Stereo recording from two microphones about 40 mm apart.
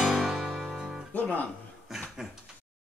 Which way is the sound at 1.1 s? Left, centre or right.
Left.